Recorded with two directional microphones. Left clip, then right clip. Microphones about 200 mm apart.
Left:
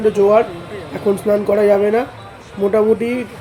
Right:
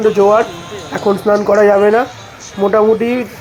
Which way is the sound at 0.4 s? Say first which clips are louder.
Right 2 dB; 35° right (ahead or behind).